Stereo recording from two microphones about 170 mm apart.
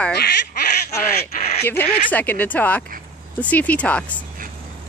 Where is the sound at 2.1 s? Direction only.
10° left (ahead or behind).